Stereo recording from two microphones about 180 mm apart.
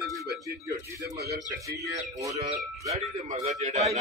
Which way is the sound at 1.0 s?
65° right (ahead or behind).